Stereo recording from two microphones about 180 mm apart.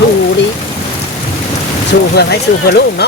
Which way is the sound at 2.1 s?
65° left (ahead or behind).